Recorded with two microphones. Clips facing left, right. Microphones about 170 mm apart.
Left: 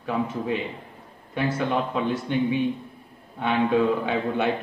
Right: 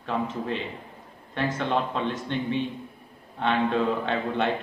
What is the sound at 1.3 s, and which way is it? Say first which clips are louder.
A man's voice: left 2 dB; 10° left (ahead or behind).